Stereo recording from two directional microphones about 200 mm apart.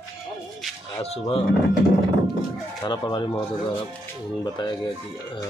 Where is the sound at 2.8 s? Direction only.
20° left (ahead or behind).